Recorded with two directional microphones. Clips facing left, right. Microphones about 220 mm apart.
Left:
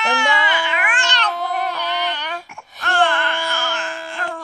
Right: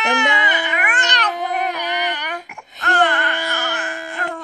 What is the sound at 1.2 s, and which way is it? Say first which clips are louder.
Baby cry: right 1 dB; 15° right (ahead or behind).